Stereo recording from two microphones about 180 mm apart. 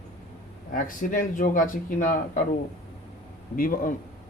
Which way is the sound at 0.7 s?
50° left (ahead or behind).